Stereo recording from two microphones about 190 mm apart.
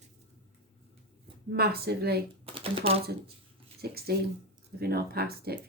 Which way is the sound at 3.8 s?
55° right (ahead or behind).